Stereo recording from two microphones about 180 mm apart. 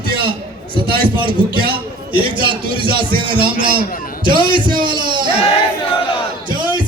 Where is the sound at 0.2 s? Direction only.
30° right (ahead or behind).